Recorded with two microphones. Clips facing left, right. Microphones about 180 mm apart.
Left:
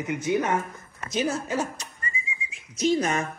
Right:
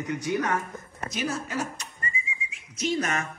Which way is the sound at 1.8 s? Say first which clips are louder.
Even; 35° left (ahead or behind).